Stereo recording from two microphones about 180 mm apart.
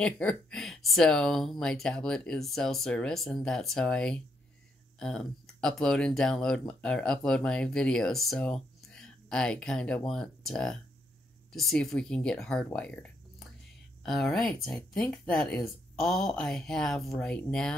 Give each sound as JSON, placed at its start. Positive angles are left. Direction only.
{"t": 0.0, "sound": "speech", "side_deg": 5}
{"t": 12.6, "sound": "a sound", "side_deg": 5}
{"t": 14.0, "sound": "speech", "side_deg": 0}